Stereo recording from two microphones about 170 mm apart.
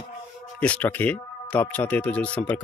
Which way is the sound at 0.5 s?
10° left (ahead or behind).